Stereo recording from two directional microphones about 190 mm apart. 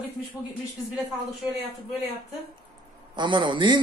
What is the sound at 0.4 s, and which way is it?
Speech, 20° left (ahead or behind).